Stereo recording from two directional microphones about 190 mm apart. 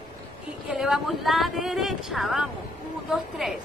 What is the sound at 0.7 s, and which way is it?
Speech, centre (ahead or behind).